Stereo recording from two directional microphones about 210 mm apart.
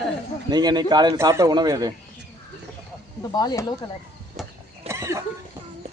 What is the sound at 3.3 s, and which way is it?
Speech, 20° left (ahead or behind).